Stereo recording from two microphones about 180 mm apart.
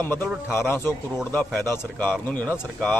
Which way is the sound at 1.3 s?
10° left (ahead or behind).